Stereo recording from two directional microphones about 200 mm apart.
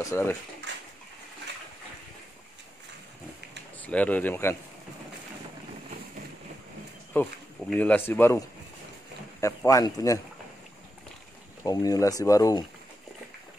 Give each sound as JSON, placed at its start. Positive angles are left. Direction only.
{"t": 0.0, "sound": "speech", "side_deg": 10}
{"t": 0.7, "sound": "a sound", "side_deg": -60}
{"t": 3.8, "sound": "speech", "side_deg": 5}
{"t": 7.1, "sound": "speech", "side_deg": 10}
{"t": 11.6, "sound": "speech", "side_deg": 20}